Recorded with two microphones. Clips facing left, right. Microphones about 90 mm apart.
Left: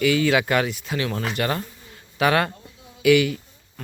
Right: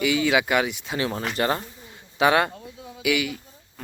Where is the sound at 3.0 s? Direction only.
10° right (ahead or behind).